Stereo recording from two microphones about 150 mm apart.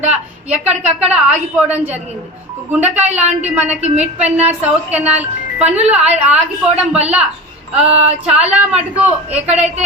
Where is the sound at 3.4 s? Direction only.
10° right (ahead or behind).